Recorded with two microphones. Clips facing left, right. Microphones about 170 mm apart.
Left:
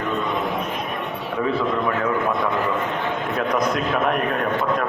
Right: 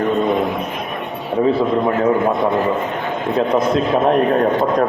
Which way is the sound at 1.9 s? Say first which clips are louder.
Right 6 dB; 30° right (ahead or behind).